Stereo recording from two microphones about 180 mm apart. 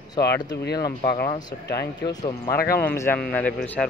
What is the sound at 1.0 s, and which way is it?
Speech, 55° left (ahead or behind).